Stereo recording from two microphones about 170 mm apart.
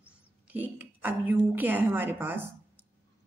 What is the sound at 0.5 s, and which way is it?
A woman's voice, 10° right (ahead or behind).